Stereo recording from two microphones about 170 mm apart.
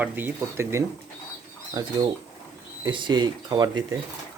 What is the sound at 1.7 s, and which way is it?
Speech, 25° right (ahead or behind).